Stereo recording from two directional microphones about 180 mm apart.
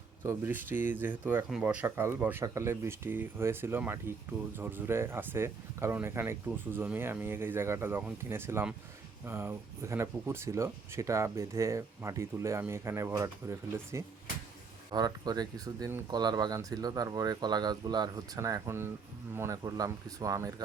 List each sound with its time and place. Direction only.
0.3 s speech: 10° right (ahead or behind)